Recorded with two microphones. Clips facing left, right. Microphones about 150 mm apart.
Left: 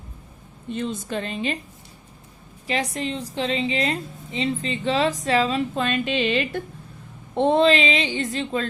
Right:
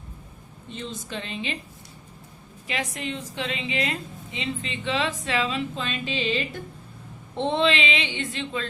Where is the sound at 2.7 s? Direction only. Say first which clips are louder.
Left 5 dB; 35° left (ahead or behind); by 6.6 s 65° left (ahead or behind).